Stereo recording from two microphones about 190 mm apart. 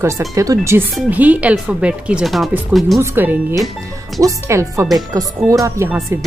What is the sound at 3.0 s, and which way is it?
A woman's voice, 10° right (ahead or behind).